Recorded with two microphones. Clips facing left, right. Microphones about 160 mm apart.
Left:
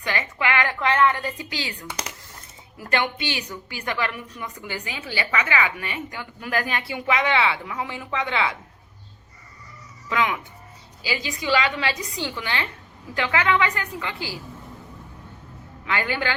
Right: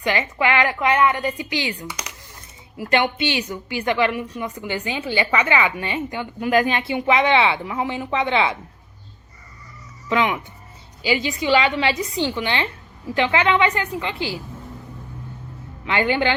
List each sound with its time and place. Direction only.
0.0 s a woman's voice: 20° right (ahead or behind)
2.9 s a woman's voice: 20° right (ahead or behind)
10.1 s a woman's voice: 25° right (ahead or behind)
15.9 s a woman's voice: 25° right (ahead or behind)